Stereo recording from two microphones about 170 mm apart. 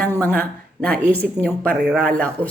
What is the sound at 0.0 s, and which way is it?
A woman's voice, 10° left (ahead or behind).